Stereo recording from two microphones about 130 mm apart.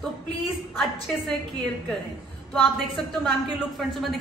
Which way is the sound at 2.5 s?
5° left (ahead or behind).